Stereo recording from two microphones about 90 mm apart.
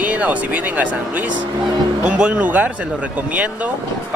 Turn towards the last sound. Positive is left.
turn(degrees=-15)  # may be behind; listen again after turning